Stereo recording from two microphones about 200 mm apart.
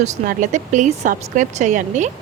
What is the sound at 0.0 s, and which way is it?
A woman's voice, 40° right (ahead or behind).